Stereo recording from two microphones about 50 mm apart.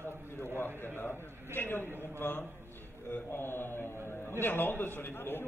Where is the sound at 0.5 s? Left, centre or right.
Left.